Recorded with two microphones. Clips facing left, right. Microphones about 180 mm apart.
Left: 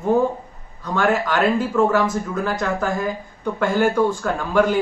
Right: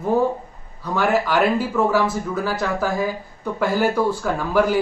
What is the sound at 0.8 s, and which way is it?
Speech, 10° right (ahead or behind).